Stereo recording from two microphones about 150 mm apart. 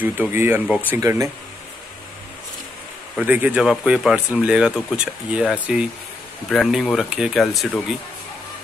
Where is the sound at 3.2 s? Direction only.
10° right (ahead or behind).